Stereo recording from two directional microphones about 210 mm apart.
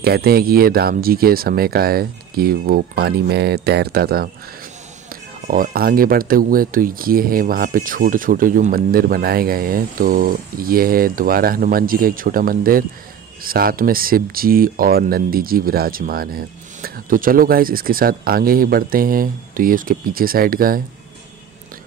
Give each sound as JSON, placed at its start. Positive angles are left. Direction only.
{"t": 0.0, "sound": "speech", "side_deg": -45}